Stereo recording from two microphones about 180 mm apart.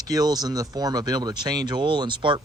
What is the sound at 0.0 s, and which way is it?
Speech, 20° right (ahead or behind).